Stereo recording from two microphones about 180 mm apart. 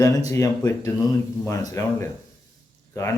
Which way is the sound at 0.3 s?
20° left (ahead or behind).